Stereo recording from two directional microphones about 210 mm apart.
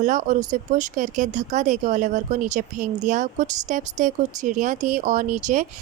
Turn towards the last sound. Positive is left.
turn(degrees=-35)  # may be behind; listen again after turning